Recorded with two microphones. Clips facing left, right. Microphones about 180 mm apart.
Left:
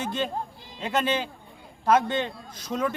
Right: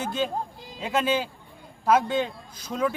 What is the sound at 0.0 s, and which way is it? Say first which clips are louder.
Speech: right 1 dB; 5° right (ahead or behind).